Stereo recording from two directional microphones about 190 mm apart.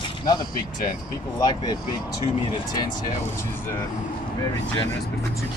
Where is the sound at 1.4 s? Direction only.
20° left (ahead or behind).